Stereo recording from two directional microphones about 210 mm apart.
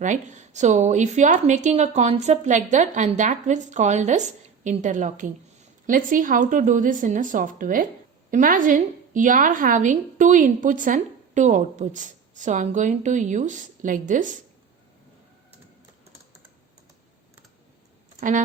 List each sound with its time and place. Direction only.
0.0 s a woman's voice: 35° right (ahead or behind)